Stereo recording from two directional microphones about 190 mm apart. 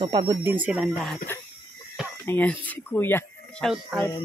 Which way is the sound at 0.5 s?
5° right (ahead or behind).